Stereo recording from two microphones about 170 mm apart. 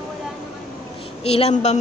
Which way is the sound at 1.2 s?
35° left (ahead or behind).